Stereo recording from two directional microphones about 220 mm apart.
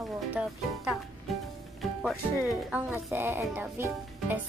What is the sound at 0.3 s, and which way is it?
Speech, 5° right (ahead or behind).